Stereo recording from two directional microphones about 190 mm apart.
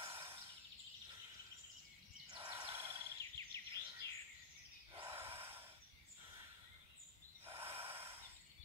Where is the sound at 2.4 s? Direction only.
25° right (ahead or behind).